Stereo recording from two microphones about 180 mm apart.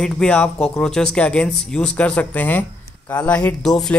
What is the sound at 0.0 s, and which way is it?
Speech, 5° left (ahead or behind).